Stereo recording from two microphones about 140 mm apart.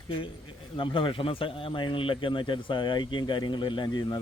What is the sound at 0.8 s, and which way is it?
A man's voice, 35° left (ahead or behind).